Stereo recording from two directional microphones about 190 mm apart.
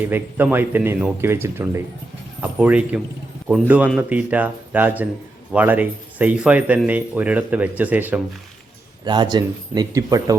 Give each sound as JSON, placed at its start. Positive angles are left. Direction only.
{"t": 0.0, "sound": "speech", "side_deg": -10}
{"t": 9.0, "sound": "speech", "side_deg": -25}